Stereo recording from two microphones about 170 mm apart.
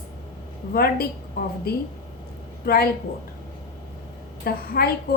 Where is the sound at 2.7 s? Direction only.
65° left (ahead or behind).